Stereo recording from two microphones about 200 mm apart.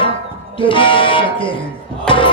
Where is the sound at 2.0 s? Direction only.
25° left (ahead or behind).